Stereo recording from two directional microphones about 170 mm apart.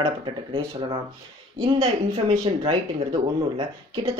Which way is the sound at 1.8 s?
35° right (ahead or behind).